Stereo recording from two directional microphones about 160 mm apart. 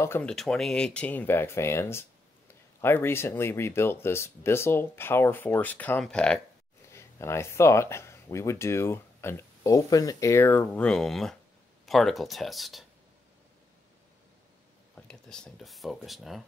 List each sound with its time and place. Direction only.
0.0 s speech: 10° left (ahead or behind)
6.9 s speech: 15° left (ahead or behind); by 12.8 s centre (ahead or behind)
15.0 s speech: 5° left (ahead or behind)